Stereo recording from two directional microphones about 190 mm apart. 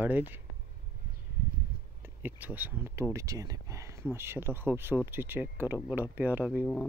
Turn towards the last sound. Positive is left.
turn(degrees=-5)  # may be behind; listen again after turning